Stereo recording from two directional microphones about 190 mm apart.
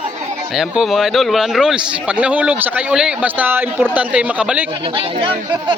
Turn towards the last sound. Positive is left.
turn(degrees=-25)  # may be behind; listen again after turning